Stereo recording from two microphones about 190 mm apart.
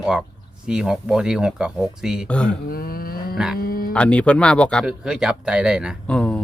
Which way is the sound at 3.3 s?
5° right (ahead or behind).